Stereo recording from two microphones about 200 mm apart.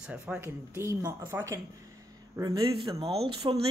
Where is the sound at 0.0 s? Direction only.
5° right (ahead or behind).